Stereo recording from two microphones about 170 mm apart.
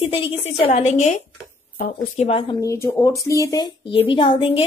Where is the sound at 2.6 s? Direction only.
15° left (ahead or behind); by 4.6 s 30° left (ahead or behind).